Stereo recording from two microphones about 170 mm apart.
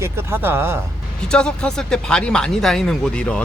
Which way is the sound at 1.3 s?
5° left (ahead or behind).